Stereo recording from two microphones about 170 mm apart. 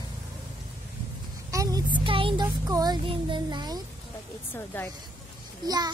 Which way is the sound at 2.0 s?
30° right (ahead or behind).